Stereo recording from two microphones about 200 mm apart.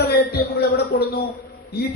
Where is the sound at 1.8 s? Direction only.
50° left (ahead or behind).